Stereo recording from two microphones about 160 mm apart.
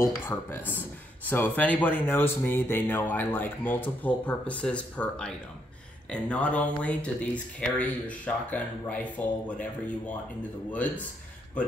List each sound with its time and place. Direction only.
0.0 s speech: 15° left (ahead or behind)